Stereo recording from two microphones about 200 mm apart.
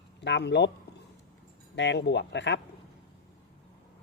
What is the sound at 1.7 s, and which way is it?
Speech, 60° left (ahead or behind).